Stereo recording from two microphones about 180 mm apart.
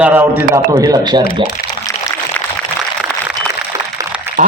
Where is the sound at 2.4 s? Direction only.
10° left (ahead or behind).